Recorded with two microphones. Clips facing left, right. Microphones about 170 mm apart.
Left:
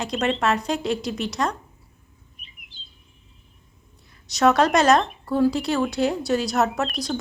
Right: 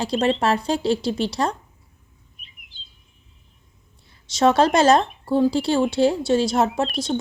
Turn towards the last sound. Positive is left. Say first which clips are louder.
# right 3 dB
turn(degrees=-25)  # may be behind; listen again after turning